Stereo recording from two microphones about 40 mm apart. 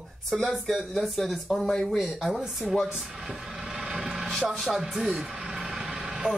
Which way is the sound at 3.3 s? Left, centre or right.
Centre.